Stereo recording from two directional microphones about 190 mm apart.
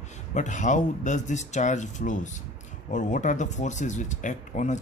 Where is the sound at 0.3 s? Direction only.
40° left (ahead or behind).